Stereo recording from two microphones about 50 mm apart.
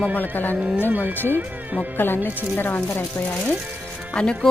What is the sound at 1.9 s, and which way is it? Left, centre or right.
Speech, left.